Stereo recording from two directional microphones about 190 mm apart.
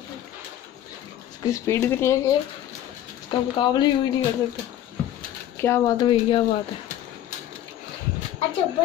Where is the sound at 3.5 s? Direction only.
25° left (ahead or behind).